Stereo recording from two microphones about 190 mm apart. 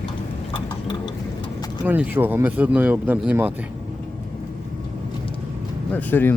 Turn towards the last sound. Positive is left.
turn(degrees=10)  # may be behind; listen again after turning